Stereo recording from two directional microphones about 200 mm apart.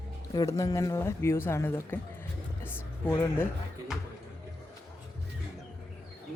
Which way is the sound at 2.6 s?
15° left (ahead or behind).